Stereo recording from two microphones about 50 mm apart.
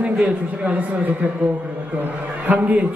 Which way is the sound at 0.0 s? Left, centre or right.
Right.